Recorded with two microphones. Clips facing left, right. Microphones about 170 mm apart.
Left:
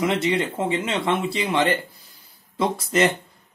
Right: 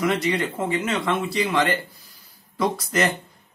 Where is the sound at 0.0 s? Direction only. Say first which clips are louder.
Left 1 dB; 25° left (ahead or behind).